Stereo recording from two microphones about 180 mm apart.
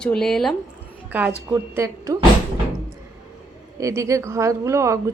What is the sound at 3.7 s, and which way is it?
Speech, 15° right (ahead or behind).